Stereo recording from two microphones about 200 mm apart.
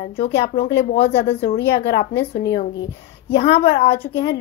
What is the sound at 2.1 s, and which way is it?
Speech, 65° left (ahead or behind).